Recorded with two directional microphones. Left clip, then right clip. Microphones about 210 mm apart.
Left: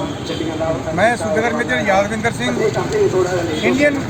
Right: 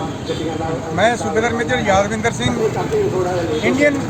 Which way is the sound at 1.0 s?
Centre (ahead or behind).